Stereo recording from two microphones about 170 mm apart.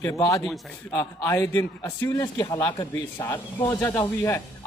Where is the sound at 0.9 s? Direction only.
15° left (ahead or behind).